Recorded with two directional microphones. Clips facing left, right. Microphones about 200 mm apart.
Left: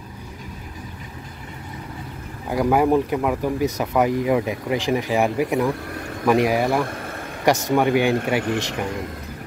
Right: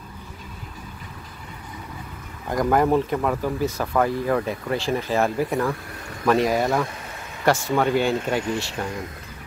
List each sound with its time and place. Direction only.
2.5 s speech: 10° left (ahead or behind)
6.9 s vehicle: 55° left (ahead or behind)
7.4 s speech: 15° left (ahead or behind)